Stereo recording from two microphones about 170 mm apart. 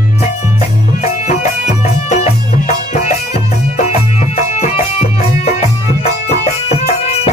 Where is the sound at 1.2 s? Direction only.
40° left (ahead or behind).